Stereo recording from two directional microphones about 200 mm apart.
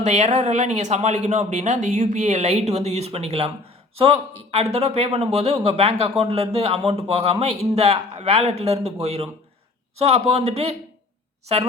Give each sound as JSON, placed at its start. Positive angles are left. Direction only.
{"t": 0.0, "sound": "speech", "side_deg": -35}